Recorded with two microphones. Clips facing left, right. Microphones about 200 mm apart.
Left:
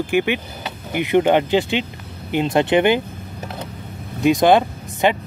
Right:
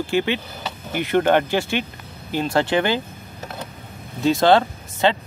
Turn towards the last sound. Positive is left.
turn(degrees=15)  # may be behind; listen again after turning